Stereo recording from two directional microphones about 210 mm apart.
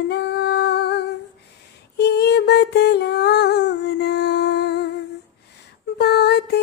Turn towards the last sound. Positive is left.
turn(degrees=50)  # may be behind; listen again after turning